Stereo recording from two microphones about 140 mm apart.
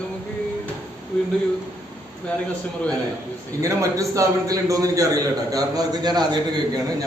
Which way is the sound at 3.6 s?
25° right (ahead or behind).